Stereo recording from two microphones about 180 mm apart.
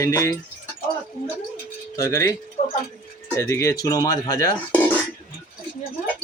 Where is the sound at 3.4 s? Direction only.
15° left (ahead or behind).